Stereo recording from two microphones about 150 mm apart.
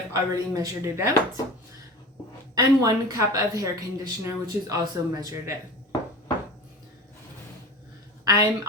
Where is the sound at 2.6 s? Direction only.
25° right (ahead or behind).